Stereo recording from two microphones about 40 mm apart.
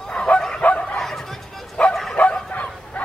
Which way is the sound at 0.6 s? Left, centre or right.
Left.